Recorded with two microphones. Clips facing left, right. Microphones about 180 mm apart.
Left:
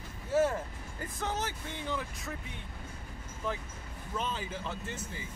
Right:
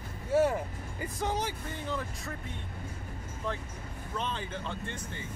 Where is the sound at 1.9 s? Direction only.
Centre (ahead or behind).